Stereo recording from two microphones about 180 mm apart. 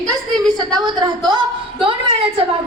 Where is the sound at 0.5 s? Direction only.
25° right (ahead or behind).